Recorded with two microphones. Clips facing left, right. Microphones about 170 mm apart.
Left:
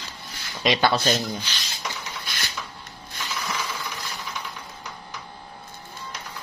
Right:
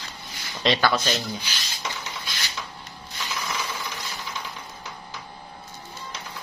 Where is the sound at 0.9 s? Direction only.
30° left (ahead or behind).